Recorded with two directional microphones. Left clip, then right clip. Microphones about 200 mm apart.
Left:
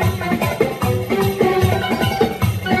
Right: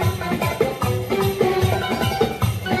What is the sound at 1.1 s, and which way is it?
Music, 50° left (ahead or behind).